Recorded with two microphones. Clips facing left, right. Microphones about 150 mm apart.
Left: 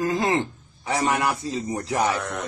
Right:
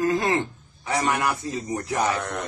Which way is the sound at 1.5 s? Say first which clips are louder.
Left 1 dB; 20° left (ahead or behind).